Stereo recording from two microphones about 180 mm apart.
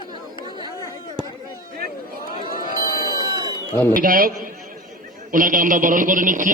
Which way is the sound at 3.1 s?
25° left (ahead or behind).